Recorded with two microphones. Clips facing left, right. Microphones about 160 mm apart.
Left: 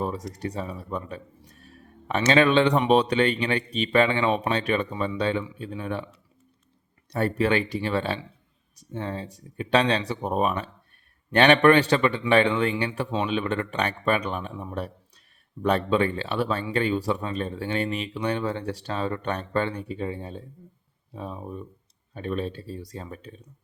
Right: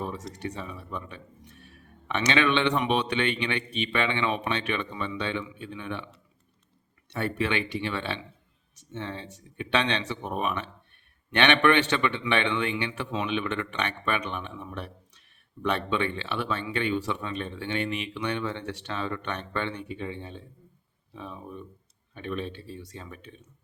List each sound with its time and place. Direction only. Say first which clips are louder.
0.0 s a sound: left 5 dB; 35° left (ahead or behind)
0.3 s speech: left 4 dB; 35° left (ahead or behind)
7.1 s speech: left 5 dB; 40° left (ahead or behind)